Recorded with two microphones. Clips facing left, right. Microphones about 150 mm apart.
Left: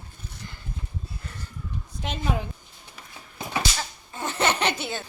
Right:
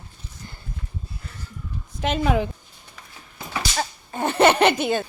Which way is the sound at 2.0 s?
85° right.